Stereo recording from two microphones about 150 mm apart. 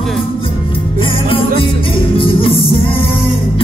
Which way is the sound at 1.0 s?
35° left (ahead or behind).